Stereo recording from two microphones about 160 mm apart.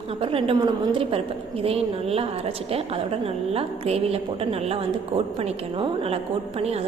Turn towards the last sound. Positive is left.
turn(degrees=-40)  # may be behind; listen again after turning